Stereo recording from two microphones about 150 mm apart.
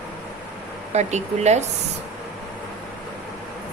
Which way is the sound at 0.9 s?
50° right (ahead or behind).